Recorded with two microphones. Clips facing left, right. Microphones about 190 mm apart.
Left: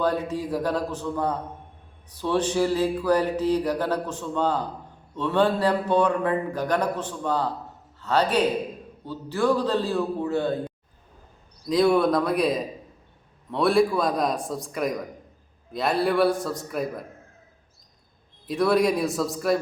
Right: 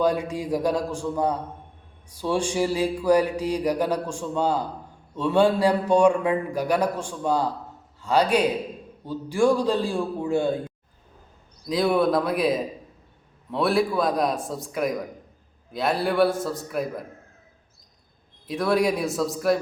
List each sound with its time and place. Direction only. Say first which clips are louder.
0.0 s mantra: right 2 dB; 10° right (ahead or behind)
11.7 s a man's voice: left 1 dB; centre (ahead or behind)
18.4 s a man's voice: left 1 dB; centre (ahead or behind)